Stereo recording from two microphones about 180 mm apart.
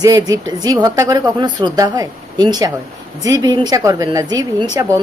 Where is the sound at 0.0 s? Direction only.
20° right (ahead or behind).